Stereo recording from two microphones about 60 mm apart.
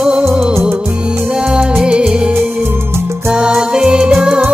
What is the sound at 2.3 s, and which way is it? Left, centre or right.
Music, right.